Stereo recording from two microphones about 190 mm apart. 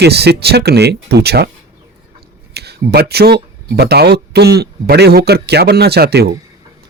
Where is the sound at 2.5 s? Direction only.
55° right (ahead or behind).